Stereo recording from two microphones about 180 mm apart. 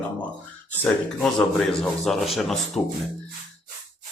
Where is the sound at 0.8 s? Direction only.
5° left (ahead or behind).